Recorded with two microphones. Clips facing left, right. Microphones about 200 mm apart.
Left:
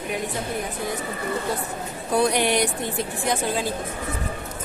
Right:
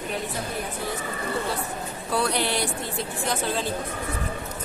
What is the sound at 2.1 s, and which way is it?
A woman's voice, 15° left (ahead or behind).